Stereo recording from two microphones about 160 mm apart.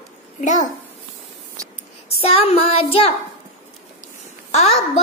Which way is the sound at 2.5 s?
35° left (ahead or behind).